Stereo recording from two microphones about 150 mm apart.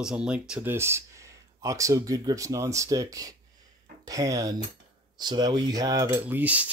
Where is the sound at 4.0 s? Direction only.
25° right (ahead or behind).